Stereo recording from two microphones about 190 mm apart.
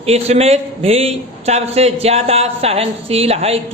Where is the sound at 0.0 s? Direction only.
35° right (ahead or behind).